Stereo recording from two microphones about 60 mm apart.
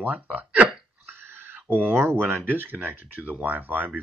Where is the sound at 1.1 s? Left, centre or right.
Right.